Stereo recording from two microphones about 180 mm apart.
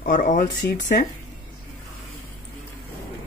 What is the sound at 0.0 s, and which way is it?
Speech, 45° left (ahead or behind).